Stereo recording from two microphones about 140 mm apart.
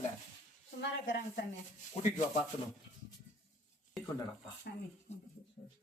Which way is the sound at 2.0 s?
55° left (ahead or behind).